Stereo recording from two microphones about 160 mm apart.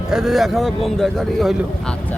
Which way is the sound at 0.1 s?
5° right (ahead or behind).